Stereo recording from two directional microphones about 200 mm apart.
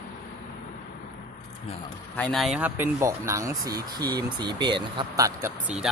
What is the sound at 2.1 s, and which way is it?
Speech, 5° left (ahead or behind).